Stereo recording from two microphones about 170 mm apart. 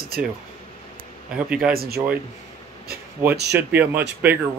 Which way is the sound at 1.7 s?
65° right (ahead or behind).